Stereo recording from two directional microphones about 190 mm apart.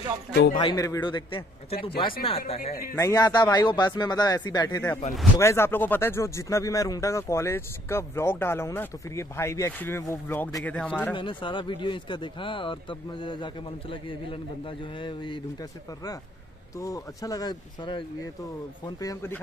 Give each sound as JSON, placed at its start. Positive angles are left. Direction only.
{"t": 0.3, "sound": "speech", "side_deg": 60}
{"t": 0.6, "sound": "speech", "side_deg": 20}
{"t": 3.0, "sound": "speech", "side_deg": 20}
{"t": 11.1, "sound": "speech", "side_deg": 25}
{"t": 16.7, "sound": "speech", "side_deg": 15}